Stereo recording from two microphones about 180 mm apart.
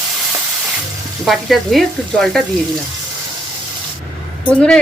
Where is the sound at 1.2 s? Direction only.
Centre (ahead or behind).